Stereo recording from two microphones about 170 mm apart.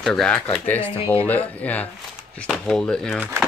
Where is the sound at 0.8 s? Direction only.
35° left (ahead or behind).